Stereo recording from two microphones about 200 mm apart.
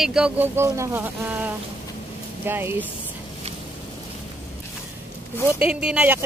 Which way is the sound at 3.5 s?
30° right (ahead or behind).